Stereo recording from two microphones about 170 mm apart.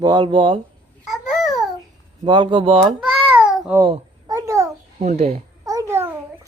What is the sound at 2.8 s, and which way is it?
Babbling, 5° right (ahead or behind).